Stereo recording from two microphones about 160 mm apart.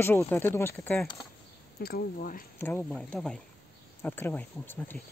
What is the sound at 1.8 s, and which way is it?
Speech, 65° left (ahead or behind).